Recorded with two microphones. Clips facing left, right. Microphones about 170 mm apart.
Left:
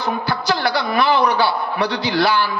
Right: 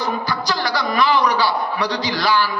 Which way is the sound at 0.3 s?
60° left (ahead or behind).